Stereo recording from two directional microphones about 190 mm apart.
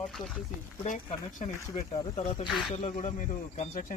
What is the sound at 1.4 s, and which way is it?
Speech, 30° left (ahead or behind).